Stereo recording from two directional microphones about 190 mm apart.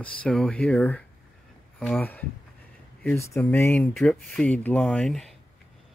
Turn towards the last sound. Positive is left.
turn(degrees=0)  # may be behind; listen again after turning